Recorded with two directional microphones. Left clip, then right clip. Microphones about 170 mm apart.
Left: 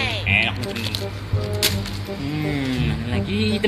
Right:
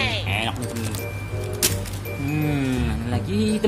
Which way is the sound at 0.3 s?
25° right (ahead or behind).